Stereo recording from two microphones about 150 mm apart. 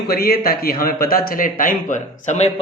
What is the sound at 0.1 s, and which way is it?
A man's voice, 90° left.